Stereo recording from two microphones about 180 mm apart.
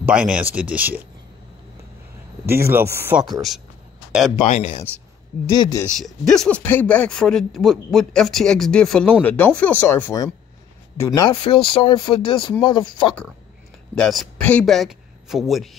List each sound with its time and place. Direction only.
0.0 s speech: 5° right (ahead or behind)
2.4 s speech: 15° right (ahead or behind)
4.4 s speech: 35° left (ahead or behind)
5.5 s speech: 20° left (ahead or behind)
5.9 s speech: centre (ahead or behind)
11.1 s speech: 25° left (ahead or behind)
13.9 s speech: centre (ahead or behind)